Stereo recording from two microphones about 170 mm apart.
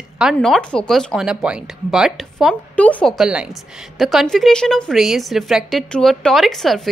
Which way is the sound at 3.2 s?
5° right (ahead or behind).